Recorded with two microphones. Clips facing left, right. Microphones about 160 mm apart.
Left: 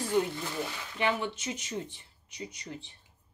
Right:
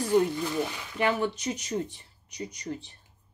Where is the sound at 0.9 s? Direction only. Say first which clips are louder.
Right 4 dB; 40° right (ahead or behind).